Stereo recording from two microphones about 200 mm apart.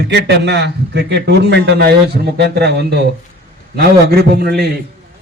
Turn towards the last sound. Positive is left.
turn(degrees=-50)  # may be behind; listen again after turning